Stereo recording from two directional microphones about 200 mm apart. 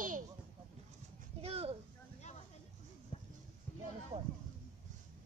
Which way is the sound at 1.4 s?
30° right (ahead or behind).